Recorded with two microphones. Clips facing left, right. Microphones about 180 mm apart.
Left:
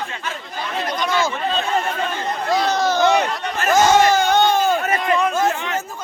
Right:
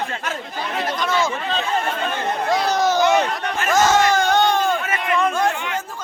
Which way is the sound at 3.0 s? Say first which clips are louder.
Left 1 dB; 15° right (ahead or behind).